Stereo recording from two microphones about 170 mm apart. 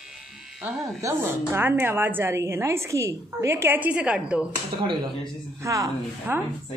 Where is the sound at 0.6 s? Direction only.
15° right (ahead or behind).